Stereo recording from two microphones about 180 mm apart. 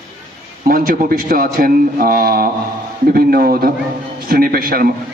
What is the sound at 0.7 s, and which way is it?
A man's voice, 55° right (ahead or behind).